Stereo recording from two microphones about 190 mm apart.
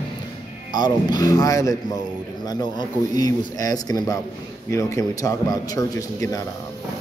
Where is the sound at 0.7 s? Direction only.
20° left (ahead or behind).